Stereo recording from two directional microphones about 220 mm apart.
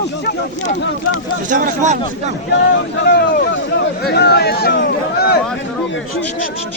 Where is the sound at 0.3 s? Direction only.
35° left (ahead or behind).